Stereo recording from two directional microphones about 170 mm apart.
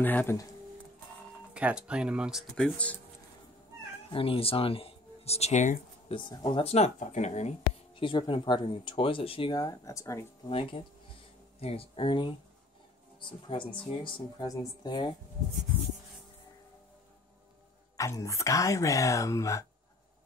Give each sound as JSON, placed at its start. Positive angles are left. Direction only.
{"t": 0.0, "sound": "speech", "side_deg": 10}
{"t": 1.5, "sound": "speech", "side_deg": -5}
{"t": 4.1, "sound": "speech", "side_deg": 35}
{"t": 6.1, "sound": "speech", "side_deg": 30}
{"t": 10.5, "sound": "speech", "side_deg": 30}
{"t": 17.9, "sound": "speech", "side_deg": 20}